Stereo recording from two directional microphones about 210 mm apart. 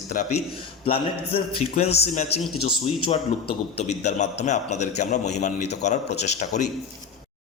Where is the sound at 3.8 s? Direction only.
35° left (ahead or behind).